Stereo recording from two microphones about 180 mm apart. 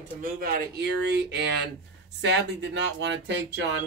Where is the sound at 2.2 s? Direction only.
80° right.